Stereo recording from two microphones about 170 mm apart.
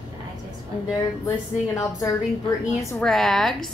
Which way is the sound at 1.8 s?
20° left (ahead or behind).